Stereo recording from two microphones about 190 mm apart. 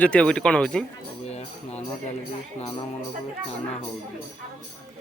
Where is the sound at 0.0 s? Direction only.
5° left (ahead or behind).